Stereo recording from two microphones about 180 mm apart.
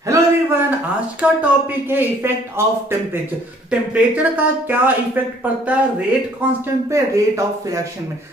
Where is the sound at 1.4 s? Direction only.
10° right (ahead or behind).